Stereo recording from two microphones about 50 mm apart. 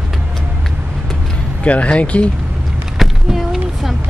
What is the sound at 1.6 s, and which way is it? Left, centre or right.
Speech, left.